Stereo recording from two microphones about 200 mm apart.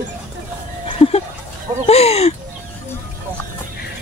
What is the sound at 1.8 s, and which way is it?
Music, 30° left (ahead or behind).